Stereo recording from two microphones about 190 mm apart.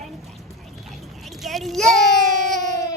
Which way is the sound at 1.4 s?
Centre (ahead or behind).